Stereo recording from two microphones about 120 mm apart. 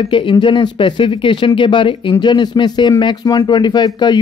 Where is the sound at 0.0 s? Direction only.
45° left (ahead or behind).